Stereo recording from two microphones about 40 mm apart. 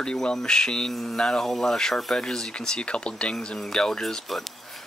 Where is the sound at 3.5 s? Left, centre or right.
Centre.